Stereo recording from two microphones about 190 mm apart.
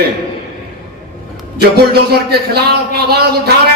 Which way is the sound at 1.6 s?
55° right (ahead or behind).